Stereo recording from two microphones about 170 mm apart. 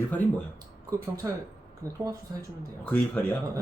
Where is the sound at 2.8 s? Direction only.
10° left (ahead or behind).